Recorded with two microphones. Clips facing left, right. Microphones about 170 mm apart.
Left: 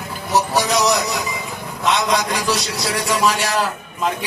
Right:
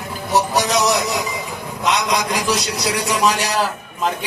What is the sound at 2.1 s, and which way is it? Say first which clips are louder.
Speech: even; 15° right (ahead or behind).